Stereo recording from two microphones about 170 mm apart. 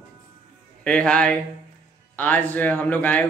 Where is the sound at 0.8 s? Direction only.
5° left (ahead or behind).